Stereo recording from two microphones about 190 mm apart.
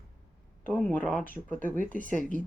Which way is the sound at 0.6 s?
10° left (ahead or behind).